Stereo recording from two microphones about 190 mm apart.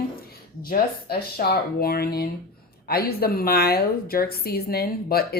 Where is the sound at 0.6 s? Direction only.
50° left (ahead or behind).